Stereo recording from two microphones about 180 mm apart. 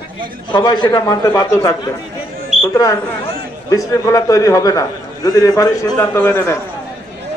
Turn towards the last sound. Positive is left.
turn(degrees=10)  # may be behind; listen again after turning